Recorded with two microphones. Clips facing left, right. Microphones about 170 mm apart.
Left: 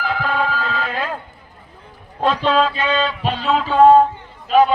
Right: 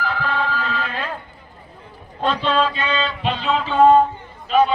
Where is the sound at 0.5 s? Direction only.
45° left (ahead or behind).